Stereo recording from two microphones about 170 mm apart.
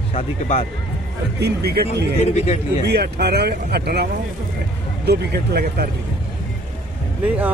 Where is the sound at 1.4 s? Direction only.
70° right (ahead or behind).